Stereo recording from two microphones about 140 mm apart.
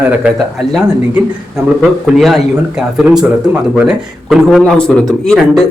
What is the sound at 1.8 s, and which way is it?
Speech, centre (ahead or behind).